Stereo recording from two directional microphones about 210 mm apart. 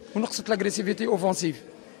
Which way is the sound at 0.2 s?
15° left (ahead or behind).